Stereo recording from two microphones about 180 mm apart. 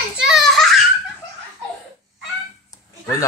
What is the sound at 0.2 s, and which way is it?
Baby laughter, centre (ahead or behind).